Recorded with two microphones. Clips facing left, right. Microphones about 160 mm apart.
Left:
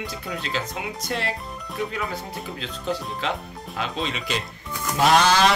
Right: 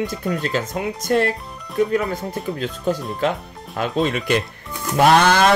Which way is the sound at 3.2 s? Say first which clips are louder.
Right 6 dB; 45° right (ahead or behind).